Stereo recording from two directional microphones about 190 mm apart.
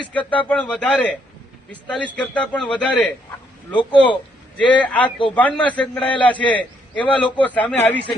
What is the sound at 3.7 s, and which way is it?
Speech, 25° left (ahead or behind).